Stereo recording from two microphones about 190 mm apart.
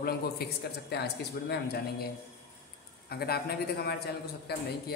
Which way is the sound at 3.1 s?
55° left (ahead or behind).